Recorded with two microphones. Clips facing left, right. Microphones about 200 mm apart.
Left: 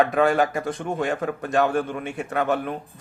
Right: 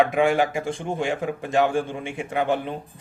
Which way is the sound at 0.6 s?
25° right (ahead or behind).